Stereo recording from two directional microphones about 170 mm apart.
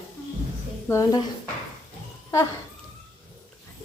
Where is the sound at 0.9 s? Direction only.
20° left (ahead or behind).